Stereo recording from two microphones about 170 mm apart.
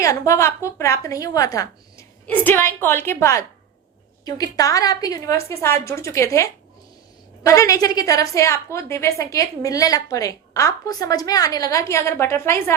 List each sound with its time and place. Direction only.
0.0 s a woman's voice: 20° left (ahead or behind)